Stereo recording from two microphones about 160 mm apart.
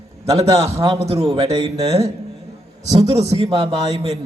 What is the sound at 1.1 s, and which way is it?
Speech, 35° right (ahead or behind).